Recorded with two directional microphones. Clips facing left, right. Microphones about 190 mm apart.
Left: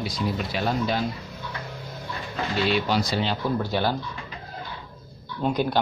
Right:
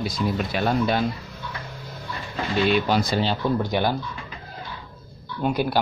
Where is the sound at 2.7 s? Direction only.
50° right (ahead or behind).